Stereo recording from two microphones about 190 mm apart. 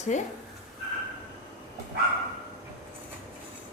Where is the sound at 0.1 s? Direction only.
40° left (ahead or behind).